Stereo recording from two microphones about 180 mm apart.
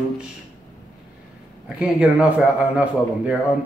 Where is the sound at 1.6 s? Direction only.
5° right (ahead or behind).